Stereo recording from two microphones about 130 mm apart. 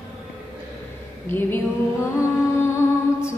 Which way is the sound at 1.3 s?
15° left (ahead or behind).